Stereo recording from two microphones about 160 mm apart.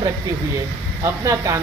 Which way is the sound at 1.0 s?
15° right (ahead or behind).